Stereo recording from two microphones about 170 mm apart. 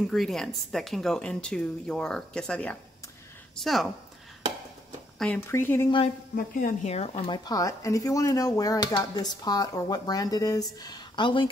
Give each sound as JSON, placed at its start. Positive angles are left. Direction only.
{"t": 0.0, "sound": "speech", "side_deg": 0}
{"t": 5.2, "sound": "speech", "side_deg": 10}
{"t": 6.3, "sound": "speech", "side_deg": 55}